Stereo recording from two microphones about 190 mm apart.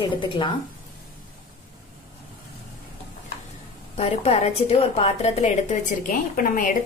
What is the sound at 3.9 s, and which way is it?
A woman's voice, 30° left (ahead or behind).